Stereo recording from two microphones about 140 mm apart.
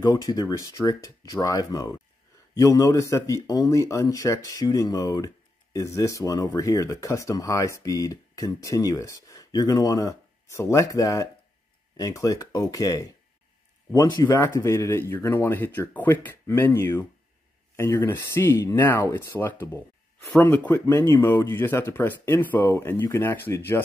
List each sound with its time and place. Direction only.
0.0 s speech: 25° left (ahead or behind)
14.1 s speech: 20° left (ahead or behind)